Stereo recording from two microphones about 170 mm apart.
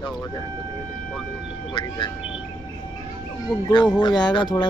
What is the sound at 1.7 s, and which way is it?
Speech, 30° left (ahead or behind).